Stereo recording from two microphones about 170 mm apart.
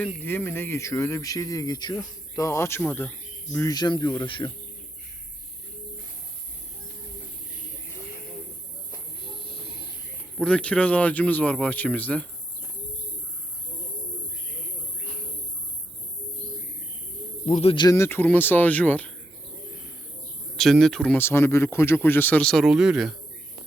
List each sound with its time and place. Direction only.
0.0 s speech: 15° left (ahead or behind)
3.8 s speech: 25° left (ahead or behind)
9.2 s a sound: 30° left (ahead or behind)
10.3 s speech: 5° left (ahead or behind)
17.4 s a man's voice: 40° left (ahead or behind)
17.8 s speech: 15° left (ahead or behind)
20.6 s speech: centre (ahead or behind)